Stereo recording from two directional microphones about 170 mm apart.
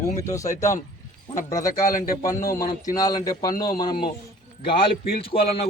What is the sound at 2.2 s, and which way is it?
Speech, 20° left (ahead or behind).